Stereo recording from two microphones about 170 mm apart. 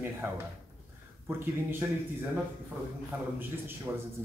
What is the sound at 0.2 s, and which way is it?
Speech, 10° right (ahead or behind).